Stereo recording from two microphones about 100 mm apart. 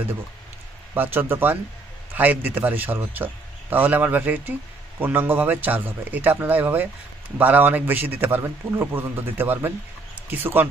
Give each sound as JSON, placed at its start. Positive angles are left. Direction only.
{"t": 0.9, "sound": "a man's voice", "side_deg": -20}